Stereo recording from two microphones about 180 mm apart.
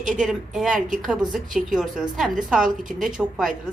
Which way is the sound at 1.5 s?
45° right (ahead or behind).